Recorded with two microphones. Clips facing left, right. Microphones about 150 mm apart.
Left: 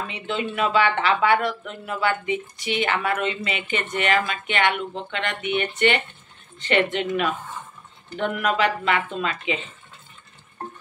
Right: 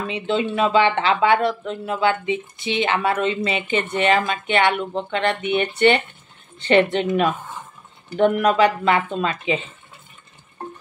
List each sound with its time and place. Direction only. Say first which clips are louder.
0.1 s speech: right 6 dB; 30° right (ahead or behind)